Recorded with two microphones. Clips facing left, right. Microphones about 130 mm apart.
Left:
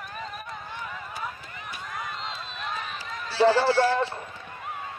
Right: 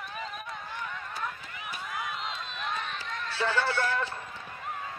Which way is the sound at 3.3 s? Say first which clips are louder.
Left 9 dB; 30° left (ahead or behind).